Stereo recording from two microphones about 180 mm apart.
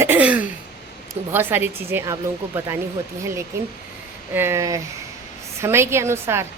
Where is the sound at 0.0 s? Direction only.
10° right (ahead or behind).